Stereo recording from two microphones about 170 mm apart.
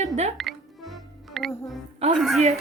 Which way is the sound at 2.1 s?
Centre (ahead or behind).